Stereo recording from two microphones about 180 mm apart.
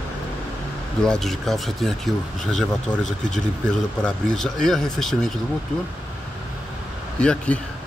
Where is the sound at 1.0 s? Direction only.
5° left (ahead or behind).